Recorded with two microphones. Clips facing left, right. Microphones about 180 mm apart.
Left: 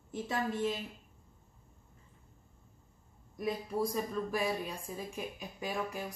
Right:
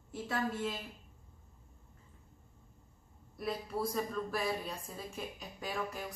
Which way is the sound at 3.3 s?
15° left (ahead or behind).